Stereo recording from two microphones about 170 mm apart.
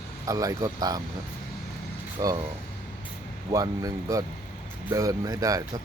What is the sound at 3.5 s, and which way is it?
Speech, 20° right (ahead or behind).